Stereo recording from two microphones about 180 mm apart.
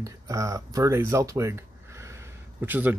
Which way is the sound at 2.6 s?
10° right (ahead or behind).